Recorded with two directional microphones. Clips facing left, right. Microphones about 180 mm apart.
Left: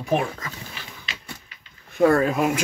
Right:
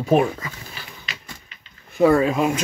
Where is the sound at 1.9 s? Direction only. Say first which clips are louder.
Right 2 dB; 5° right (ahead or behind).